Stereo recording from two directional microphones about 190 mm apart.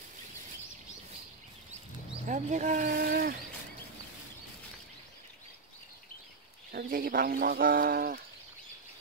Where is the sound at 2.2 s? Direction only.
40° right (ahead or behind).